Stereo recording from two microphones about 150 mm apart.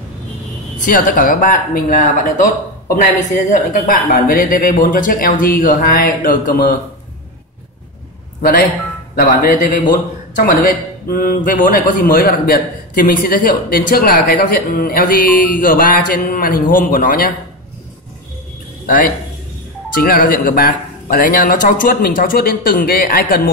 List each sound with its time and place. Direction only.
0.7 s speech: 65° left (ahead or behind)
9.1 s speech: 70° left (ahead or behind)
18.9 s a man's voice: 60° left (ahead or behind)
20.0 s speech: 80° left